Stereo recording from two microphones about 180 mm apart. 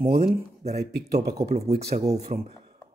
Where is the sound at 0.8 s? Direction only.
60° right (ahead or behind).